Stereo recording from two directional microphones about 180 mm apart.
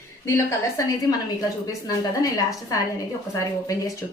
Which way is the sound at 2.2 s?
20° left (ahead or behind).